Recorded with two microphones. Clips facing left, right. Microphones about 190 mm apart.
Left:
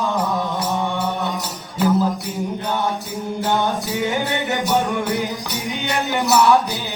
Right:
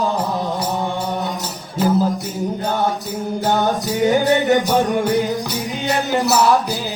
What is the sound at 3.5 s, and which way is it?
Music, 40° right (ahead or behind).